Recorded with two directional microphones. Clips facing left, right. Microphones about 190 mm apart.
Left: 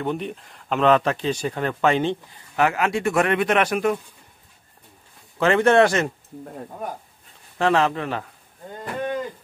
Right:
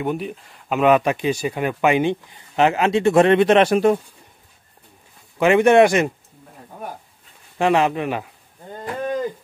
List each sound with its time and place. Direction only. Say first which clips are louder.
0.0 s speech: right 2 dB; 5° right (ahead or behind); by 4.0 s 30° right (ahead or behind)
5.4 s speech: right 3 dB; 15° right (ahead or behind)
7.5 s speech: right 2 dB; 15° right (ahead or behind)